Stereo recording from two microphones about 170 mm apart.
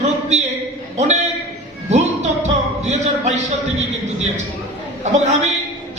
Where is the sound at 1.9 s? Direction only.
40° right (ahead or behind).